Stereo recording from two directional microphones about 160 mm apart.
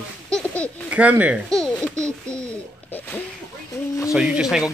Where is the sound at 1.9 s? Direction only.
20° right (ahead or behind).